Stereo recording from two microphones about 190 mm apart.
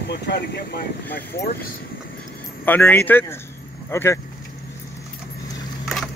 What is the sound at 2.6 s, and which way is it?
Speech, 10° left (ahead or behind).